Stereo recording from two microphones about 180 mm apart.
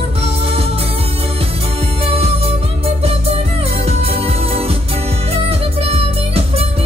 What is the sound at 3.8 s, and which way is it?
Music, 35° right (ahead or behind).